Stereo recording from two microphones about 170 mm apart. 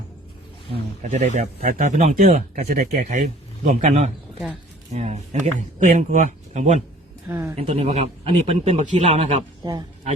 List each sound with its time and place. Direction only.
0.7 s speech: 45° right (ahead or behind)
7.3 s speech: 15° right (ahead or behind)
7.5 s speech: 40° right (ahead or behind)